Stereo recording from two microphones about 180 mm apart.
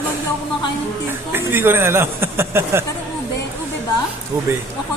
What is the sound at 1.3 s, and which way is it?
Speech, 10° right (ahead or behind).